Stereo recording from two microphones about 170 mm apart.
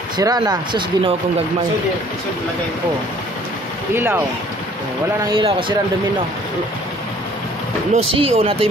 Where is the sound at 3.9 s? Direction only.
10° right (ahead or behind).